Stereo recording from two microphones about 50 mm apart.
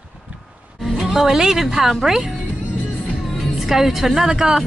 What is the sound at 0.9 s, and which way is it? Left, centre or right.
A woman's voice, centre.